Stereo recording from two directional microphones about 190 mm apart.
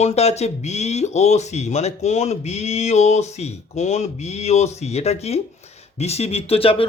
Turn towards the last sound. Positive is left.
turn(degrees=30)  # may be behind; listen again after turning